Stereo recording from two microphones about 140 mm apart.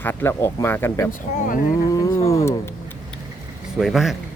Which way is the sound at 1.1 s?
80° left.